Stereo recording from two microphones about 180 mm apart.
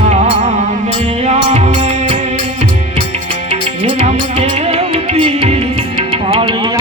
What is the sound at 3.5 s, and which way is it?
Music, 35° right (ahead or behind).